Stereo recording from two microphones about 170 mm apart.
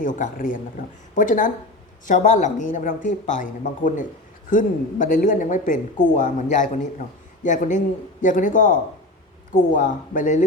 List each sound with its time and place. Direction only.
0.0 s speech: 50° left (ahead or behind)